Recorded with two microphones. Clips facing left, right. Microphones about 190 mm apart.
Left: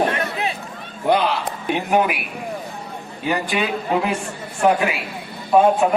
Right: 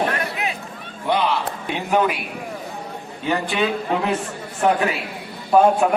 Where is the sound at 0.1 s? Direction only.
30° left (ahead or behind).